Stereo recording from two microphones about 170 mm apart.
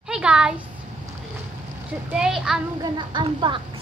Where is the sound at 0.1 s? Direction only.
5° right (ahead or behind).